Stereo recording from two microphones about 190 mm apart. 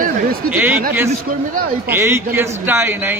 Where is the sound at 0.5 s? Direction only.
10° right (ahead or behind).